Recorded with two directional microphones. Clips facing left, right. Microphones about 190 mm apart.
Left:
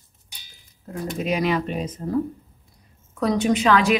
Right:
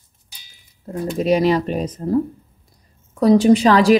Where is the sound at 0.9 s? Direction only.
35° right (ahead or behind).